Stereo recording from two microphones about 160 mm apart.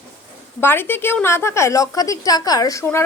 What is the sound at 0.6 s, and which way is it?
A woman's voice, 15° left (ahead or behind).